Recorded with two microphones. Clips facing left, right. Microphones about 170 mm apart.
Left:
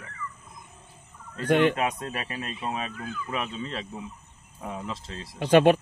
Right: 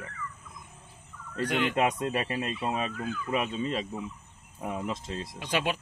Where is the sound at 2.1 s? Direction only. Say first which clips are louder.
Right 4 dB; 30° right (ahead or behind).